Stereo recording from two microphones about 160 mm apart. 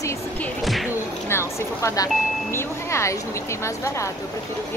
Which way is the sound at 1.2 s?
15° left (ahead or behind).